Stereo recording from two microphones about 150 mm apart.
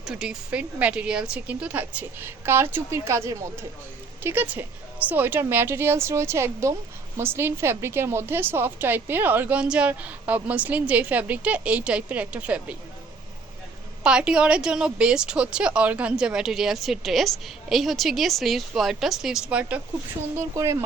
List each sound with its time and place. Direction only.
0.0 s a woman's voice: 5° right (ahead or behind)
14.0 s a woman's voice: 5° right (ahead or behind)